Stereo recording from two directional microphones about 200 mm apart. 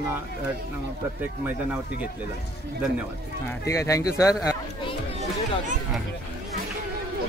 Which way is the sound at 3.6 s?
15° left (ahead or behind).